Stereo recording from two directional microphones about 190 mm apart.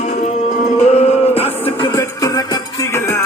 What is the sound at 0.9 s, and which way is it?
Music, 35° left (ahead or behind).